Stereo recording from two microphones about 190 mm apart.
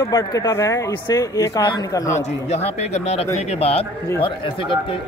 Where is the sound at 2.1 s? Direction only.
35° left (ahead or behind).